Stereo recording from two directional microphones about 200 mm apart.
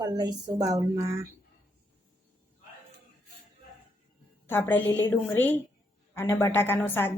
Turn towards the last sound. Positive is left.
turn(degrees=10)  # may be behind; listen again after turning